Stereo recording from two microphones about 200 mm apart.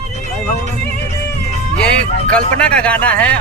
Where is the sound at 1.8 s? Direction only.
5° left (ahead or behind).